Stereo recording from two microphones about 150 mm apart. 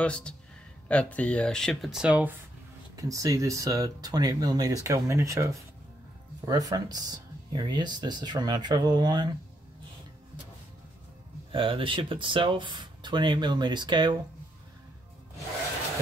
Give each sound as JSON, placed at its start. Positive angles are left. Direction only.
{"t": 0.0, "sound": "speech", "side_deg": 5}
{"t": 3.0, "sound": "speech", "side_deg": -25}
{"t": 11.5, "sound": "speech", "side_deg": -35}